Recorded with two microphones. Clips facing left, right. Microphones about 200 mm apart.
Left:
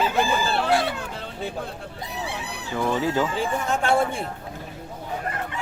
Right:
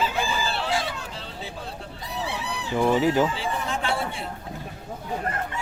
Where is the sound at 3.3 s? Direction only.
45° left (ahead or behind).